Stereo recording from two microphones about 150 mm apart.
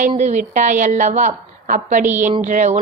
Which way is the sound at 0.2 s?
55° right (ahead or behind).